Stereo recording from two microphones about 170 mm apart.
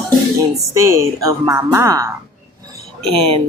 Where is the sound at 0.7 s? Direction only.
15° right (ahead or behind).